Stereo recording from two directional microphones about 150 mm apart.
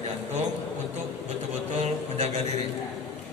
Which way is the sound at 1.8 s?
50° right (ahead or behind).